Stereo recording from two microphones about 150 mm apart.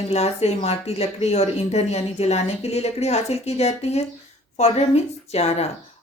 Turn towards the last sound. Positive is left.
turn(degrees=45)  # may be behind; listen again after turning